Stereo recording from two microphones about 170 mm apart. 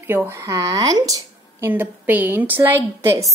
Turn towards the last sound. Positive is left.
turn(degrees=-15)  # may be behind; listen again after turning